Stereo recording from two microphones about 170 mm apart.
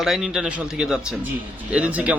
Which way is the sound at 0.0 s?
Centre (ahead or behind).